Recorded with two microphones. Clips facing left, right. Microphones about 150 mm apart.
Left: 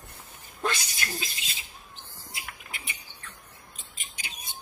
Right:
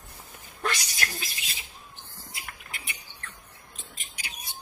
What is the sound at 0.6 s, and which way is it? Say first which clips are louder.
Speech: even; 25° left (ahead or behind).